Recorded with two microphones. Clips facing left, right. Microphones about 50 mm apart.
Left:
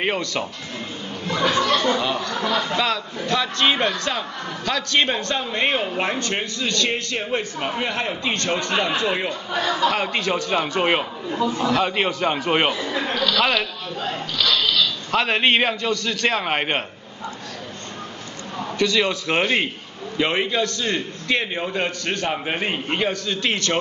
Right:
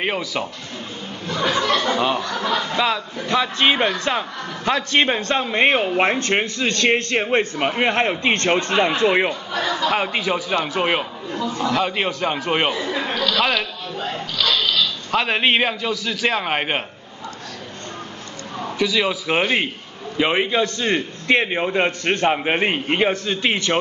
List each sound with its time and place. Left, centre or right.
0.0 s a man's voice: centre
2.0 s a man's voice: centre
2.5 s a man's voice: centre; by 9.3 s right
9.8 s a man's voice: centre
11.3 s a man's voice: centre
11.6 s a man's voice: centre
14.4 s a sound: centre
15.0 s a man's voice: centre
18.8 s a man's voice: centre